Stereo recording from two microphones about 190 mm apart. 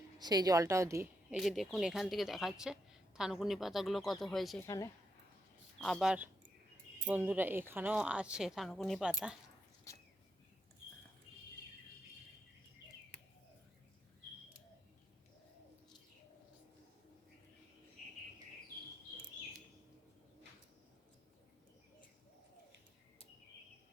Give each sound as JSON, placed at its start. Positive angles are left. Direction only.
{"t": 0.2, "sound": "a woman's voice", "side_deg": -20}
{"t": 1.4, "sound": "speech", "side_deg": 0}
{"t": 4.6, "sound": "a woman's voice", "side_deg": 15}
{"t": 5.8, "sound": "speech", "side_deg": 0}